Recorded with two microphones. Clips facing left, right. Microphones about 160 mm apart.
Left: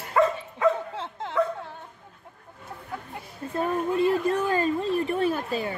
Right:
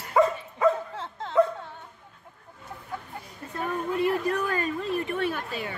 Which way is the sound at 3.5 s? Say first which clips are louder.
Left 4 dB; 30° left (ahead or behind).